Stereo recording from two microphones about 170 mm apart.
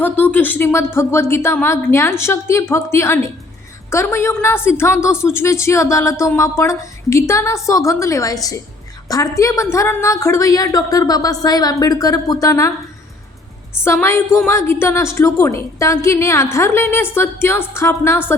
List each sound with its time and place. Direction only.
0.0 s a woman's voice: 10° left (ahead or behind)
13.8 s a woman's voice: 15° left (ahead or behind)